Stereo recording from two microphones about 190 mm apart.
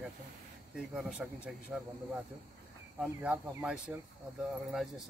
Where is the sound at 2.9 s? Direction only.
5° right (ahead or behind).